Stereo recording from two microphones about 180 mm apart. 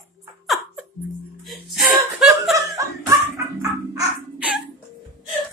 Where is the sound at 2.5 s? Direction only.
15° right (ahead or behind).